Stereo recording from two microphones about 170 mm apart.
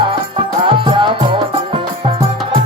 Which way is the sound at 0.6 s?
30° right (ahead or behind).